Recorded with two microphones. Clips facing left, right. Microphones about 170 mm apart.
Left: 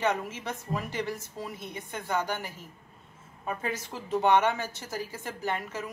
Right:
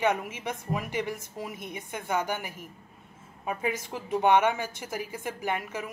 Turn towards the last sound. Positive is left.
turn(degrees=-15)  # may be behind; listen again after turning